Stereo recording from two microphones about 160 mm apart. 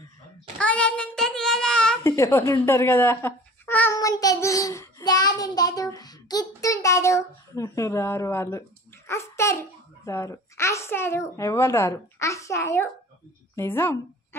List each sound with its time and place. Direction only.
0.6 s child singing: 5° left (ahead or behind)
2.0 s speech: 15° left (ahead or behind)
3.9 s child singing: 25° left (ahead or behind)
13.6 s a woman's voice: 15° left (ahead or behind)